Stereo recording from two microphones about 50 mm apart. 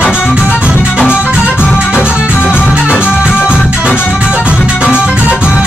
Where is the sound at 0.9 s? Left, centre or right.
Right.